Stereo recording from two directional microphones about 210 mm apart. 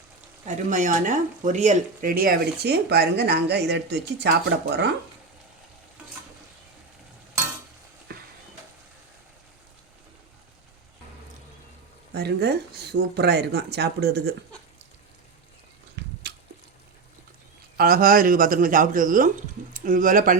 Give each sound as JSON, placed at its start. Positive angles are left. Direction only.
{"t": 0.4, "sound": "speech", "side_deg": -35}
{"t": 12.1, "sound": "speech", "side_deg": -50}
{"t": 16.0, "sound": "a sound", "side_deg": -55}
{"t": 17.7, "sound": "speech", "side_deg": -45}